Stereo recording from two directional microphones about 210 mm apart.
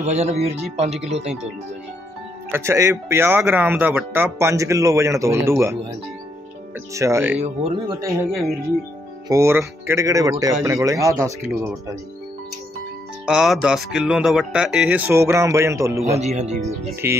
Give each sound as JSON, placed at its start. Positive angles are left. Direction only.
{"t": 0.0, "sound": "speech", "side_deg": -30}
{"t": 2.5, "sound": "speech", "side_deg": -15}
{"t": 6.9, "sound": "speech", "side_deg": -15}
{"t": 7.3, "sound": "speech", "side_deg": -30}
{"t": 13.2, "sound": "speech", "side_deg": -5}
{"t": 16.2, "sound": "speech", "side_deg": -30}